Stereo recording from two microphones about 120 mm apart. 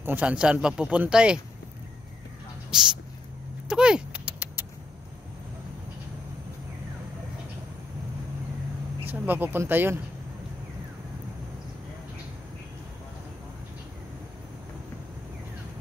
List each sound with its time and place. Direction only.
0.0 s speech: 15° right (ahead or behind)
2.7 s speech: 5° right (ahead or behind)
3.6 s a sound: 5° right (ahead or behind)
9.0 s speech: 15° right (ahead or behind)